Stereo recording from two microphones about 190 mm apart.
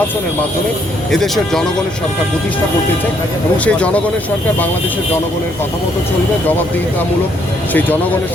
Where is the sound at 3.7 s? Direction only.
5° left (ahead or behind).